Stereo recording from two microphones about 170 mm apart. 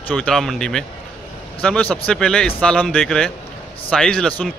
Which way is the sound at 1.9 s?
5° left (ahead or behind).